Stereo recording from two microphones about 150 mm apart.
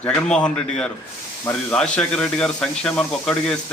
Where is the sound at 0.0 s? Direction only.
5° left (ahead or behind).